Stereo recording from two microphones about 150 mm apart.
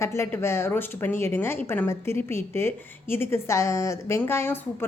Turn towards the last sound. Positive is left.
turn(degrees=15)  # may be behind; listen again after turning